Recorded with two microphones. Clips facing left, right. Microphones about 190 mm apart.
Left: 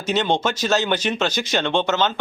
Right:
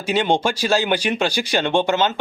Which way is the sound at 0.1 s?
10° right (ahead or behind).